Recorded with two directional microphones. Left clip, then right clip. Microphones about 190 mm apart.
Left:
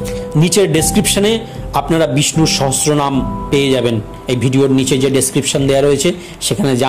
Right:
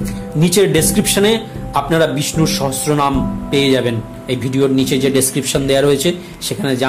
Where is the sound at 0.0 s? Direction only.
30° left (ahead or behind).